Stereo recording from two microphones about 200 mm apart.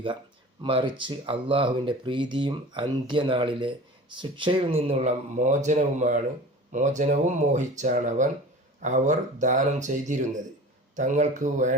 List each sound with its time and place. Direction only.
0.6 s speech: 25° right (ahead or behind)